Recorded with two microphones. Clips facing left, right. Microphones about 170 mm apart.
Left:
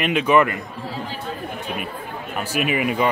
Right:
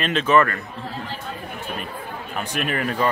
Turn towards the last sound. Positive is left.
turn(degrees=10)  # may be behind; listen again after turning